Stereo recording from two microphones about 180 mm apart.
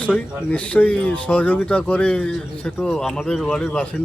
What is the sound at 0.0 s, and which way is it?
A man's voice, 5° left (ahead or behind).